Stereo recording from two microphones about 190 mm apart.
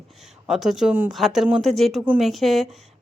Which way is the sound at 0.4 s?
Centre (ahead or behind).